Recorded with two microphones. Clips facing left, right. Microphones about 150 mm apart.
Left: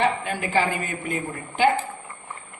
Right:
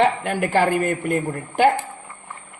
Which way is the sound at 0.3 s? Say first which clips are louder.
Right 5 dB; 60° right (ahead or behind).